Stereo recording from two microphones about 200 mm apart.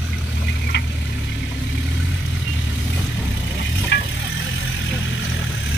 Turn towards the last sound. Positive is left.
turn(degrees=60)  # may be behind; listen again after turning